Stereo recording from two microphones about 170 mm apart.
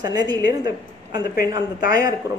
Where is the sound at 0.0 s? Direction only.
25° right (ahead or behind).